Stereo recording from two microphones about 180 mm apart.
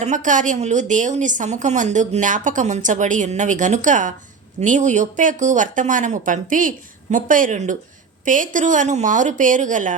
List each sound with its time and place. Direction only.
0.0 s a woman's voice: 45° right (ahead or behind)